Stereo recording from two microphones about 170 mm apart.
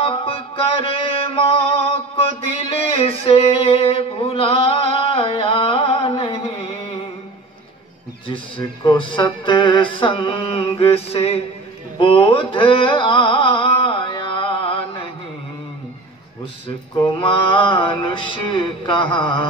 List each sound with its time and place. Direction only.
0.0 s mantra: 30° left (ahead or behind)
8.3 s speech: 30° left (ahead or behind)
12.0 s music: 30° left (ahead or behind)
16.6 s speech: 30° left (ahead or behind)